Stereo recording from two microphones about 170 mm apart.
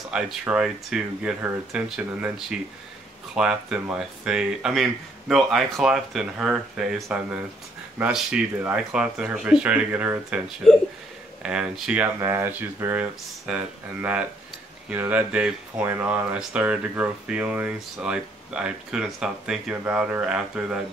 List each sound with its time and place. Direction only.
0.1 s speech: 5° right (ahead or behind)